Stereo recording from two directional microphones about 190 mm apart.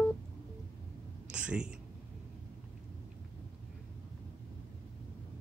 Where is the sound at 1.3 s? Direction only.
5° right (ahead or behind).